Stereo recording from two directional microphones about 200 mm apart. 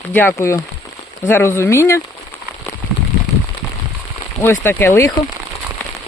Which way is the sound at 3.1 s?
35° left (ahead or behind).